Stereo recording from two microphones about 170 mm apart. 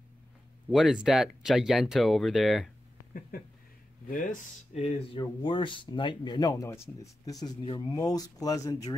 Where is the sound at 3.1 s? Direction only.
55° left (ahead or behind).